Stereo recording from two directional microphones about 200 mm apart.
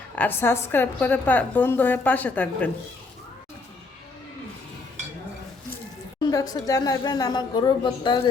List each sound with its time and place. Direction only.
0.2 s a woman's voice: 10° left (ahead or behind)
6.3 s a woman's voice: 20° left (ahead or behind)